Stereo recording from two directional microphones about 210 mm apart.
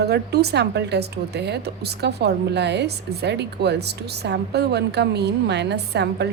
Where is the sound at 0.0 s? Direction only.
50° right (ahead or behind).